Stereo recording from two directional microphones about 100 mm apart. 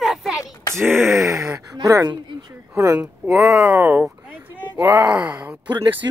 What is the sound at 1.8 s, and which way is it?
Speech, 40° right (ahead or behind).